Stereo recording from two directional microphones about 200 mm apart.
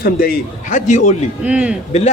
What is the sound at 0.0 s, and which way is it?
A man's voice, 45° left (ahead or behind).